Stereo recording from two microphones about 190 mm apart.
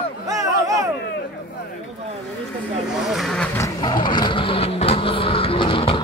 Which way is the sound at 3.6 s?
20° left (ahead or behind).